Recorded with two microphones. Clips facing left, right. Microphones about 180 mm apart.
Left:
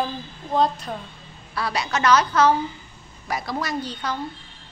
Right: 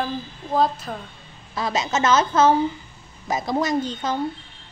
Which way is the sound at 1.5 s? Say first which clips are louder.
Right 2 dB; 20° right (ahead or behind).